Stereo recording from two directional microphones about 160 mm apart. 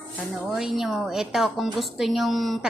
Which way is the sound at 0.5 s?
Centre (ahead or behind).